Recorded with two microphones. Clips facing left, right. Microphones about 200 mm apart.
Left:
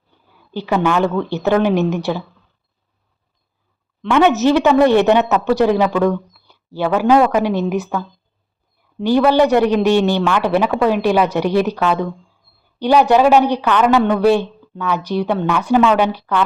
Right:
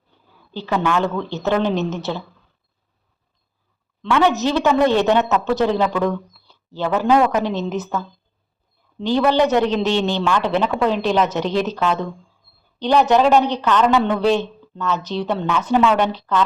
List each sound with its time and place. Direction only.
0.5 s a man's voice: 15° left (ahead or behind)
4.0 s a man's voice: 20° left (ahead or behind)